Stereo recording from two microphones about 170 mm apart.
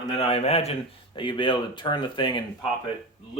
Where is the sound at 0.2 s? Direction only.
35° left (ahead or behind).